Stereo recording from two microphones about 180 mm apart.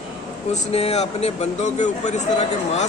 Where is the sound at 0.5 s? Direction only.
35° left (ahead or behind).